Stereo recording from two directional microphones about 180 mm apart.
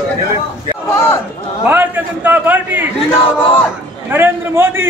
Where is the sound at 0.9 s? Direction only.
15° left (ahead or behind).